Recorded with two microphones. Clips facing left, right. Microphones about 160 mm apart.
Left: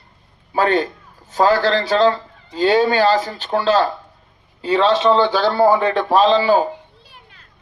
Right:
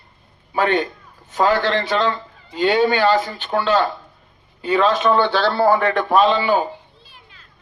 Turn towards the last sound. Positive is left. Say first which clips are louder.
# left 2 dB
turn(degrees=35)  # may be behind; listen again after turning